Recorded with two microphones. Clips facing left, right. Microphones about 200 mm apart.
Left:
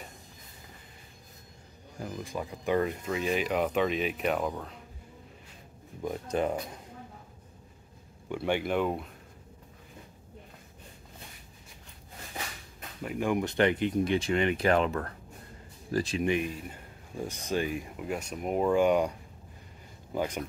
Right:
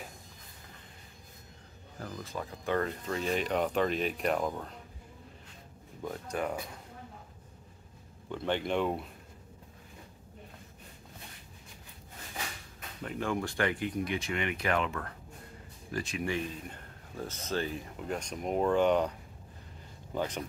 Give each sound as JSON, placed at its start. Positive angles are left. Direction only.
{"t": 2.0, "sound": "speech", "side_deg": 15}
{"t": 6.0, "sound": "speech", "side_deg": 15}
{"t": 8.3, "sound": "speech", "side_deg": 10}
{"t": 13.0, "sound": "speech", "side_deg": 10}
{"t": 16.2, "sound": "speech", "side_deg": 15}
{"t": 20.2, "sound": "speech", "side_deg": 10}